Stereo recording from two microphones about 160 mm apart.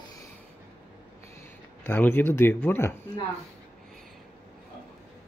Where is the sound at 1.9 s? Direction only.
15° left (ahead or behind).